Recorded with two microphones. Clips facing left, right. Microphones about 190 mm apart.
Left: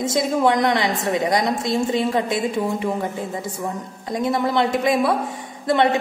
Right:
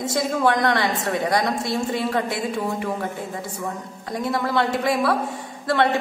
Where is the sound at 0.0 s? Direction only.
20° left (ahead or behind).